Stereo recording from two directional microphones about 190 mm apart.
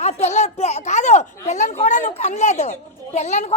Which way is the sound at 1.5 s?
40° left (ahead or behind).